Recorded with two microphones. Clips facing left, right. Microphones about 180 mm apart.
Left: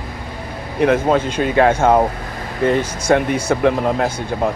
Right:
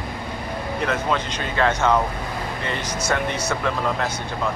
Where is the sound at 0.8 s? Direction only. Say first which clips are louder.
Left 10 dB; 50° left (ahead or behind).